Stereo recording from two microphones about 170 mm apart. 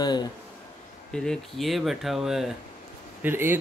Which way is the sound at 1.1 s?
5° left (ahead or behind).